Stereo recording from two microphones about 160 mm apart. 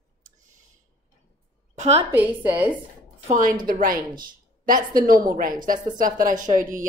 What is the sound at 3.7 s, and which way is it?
A woman's voice, 60° right (ahead or behind).